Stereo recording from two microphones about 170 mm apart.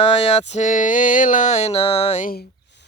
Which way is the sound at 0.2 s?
40° left (ahead or behind).